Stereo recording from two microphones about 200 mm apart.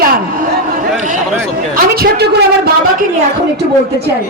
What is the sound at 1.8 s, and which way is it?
A woman's voice, 50° right (ahead or behind).